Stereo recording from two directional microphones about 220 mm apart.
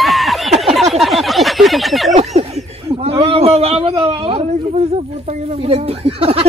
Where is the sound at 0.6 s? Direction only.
Centre (ahead or behind).